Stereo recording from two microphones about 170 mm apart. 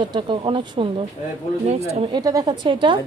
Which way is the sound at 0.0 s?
30° right (ahead or behind).